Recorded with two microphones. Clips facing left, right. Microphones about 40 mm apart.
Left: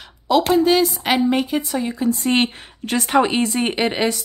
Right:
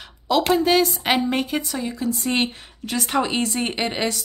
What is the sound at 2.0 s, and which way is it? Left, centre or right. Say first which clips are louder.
A woman's voice: left 4 dB; left.